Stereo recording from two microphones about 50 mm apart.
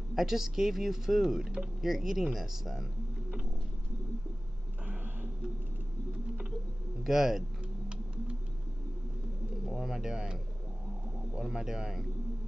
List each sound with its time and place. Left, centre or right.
0.1 s speech: centre
4.8 s a sound: right
7.0 s speech: centre
9.7 s speech: centre
11.5 s speech: centre